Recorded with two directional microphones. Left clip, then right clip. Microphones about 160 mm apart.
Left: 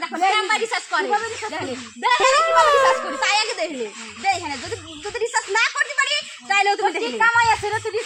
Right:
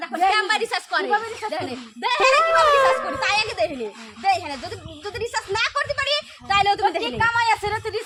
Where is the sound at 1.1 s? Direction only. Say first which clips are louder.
Even; 10° left (ahead or behind).